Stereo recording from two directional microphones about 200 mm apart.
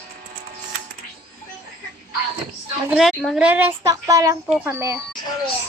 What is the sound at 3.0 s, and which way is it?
A child's voice, centre (ahead or behind).